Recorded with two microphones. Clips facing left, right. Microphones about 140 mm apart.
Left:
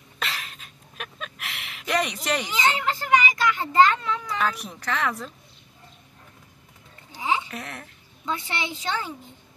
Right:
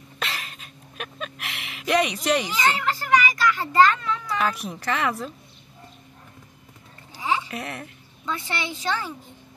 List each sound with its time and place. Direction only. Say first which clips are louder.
0.2 s a sound: right 1 dB; centre (ahead or behind)
2.5 s a child's voice: right 1 dB; 20° left (ahead or behind)
4.4 s a woman's voice: right 1 dB; centre (ahead or behind)
7.2 s a sound: even; 20° left (ahead or behind)
7.5 s a woman's voice: right 3 dB; 5° right (ahead or behind)
8.3 s speech: even; 20° left (ahead or behind)